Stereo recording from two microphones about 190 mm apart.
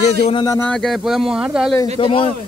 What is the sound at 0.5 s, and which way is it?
Speech, 10° left (ahead or behind).